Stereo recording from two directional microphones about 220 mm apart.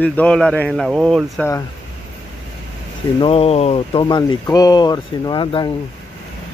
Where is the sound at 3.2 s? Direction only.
25° left (ahead or behind).